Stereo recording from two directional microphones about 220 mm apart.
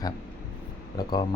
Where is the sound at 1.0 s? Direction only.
20° left (ahead or behind).